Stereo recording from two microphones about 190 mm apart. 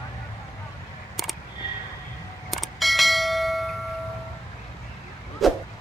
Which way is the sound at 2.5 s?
Centre (ahead or behind).